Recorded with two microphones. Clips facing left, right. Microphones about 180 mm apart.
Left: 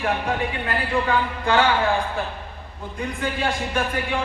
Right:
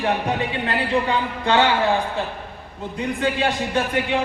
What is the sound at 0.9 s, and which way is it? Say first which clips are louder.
Speech: left 2 dB; 20° right (ahead or behind).